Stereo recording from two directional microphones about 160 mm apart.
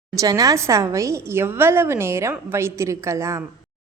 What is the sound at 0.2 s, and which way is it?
A woman's voice, 20° right (ahead or behind).